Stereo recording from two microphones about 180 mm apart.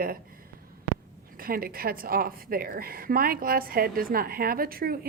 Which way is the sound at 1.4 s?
55° right (ahead or behind).